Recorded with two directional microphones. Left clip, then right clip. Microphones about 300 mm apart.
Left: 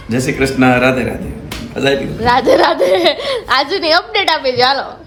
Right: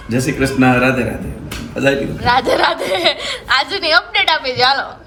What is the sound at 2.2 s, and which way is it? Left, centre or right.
A child's voice, centre.